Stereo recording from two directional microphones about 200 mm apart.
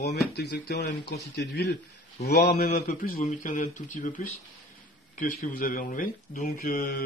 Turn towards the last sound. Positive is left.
turn(degrees=45)  # may be behind; listen again after turning